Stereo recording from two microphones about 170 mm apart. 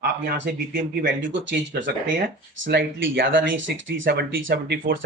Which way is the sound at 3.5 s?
90° right.